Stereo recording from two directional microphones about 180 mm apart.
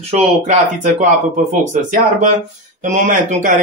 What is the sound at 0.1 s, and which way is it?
Speech, 40° right (ahead or behind).